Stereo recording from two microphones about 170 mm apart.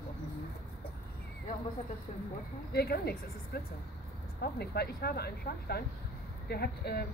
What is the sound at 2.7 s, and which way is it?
A woman's voice, 65° left (ahead or behind).